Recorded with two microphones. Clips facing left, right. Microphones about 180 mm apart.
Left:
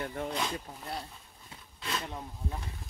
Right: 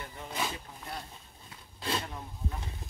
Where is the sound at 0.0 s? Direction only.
60° left (ahead or behind).